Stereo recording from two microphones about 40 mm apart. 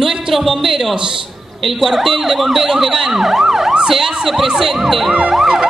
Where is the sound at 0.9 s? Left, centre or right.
Right.